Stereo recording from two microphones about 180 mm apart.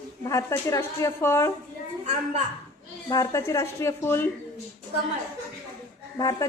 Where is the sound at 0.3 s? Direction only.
20° left (ahead or behind).